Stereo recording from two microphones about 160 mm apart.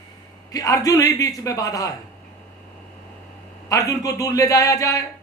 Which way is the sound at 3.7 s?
20° left (ahead or behind).